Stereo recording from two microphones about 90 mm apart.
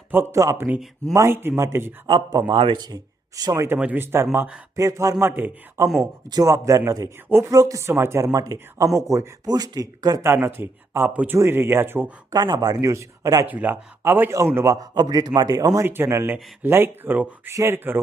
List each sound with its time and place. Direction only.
0.1 s speech: 30° right (ahead or behind)
2.5 s speech: 75° right (ahead or behind)
2.7 s speech: 50° right (ahead or behind)
3.8 s speech: 15° right (ahead or behind)
4.0 s speech: 30° right (ahead or behind)
4.8 s speech: 40° right (ahead or behind)
7.3 s speech: 25° right (ahead or behind)
7.5 s speech: 40° right (ahead or behind)
10.2 s speech: 25° right (ahead or behind)
12.3 s speech: 45° right (ahead or behind)
13.5 s speech: 20° right (ahead or behind)
14.8 s speech: 45° right (ahead or behind)
15.9 s speech: 30° right (ahead or behind)